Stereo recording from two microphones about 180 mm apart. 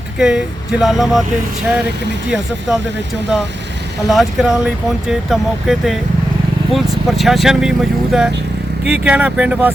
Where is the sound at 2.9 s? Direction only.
75° right (ahead or behind).